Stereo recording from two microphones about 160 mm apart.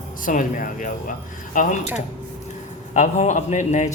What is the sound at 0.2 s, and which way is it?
A man's voice, 55° left (ahead or behind).